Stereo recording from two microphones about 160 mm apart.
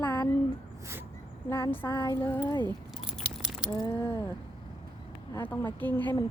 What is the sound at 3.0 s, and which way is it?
Keys jangling, 5° right (ahead or behind).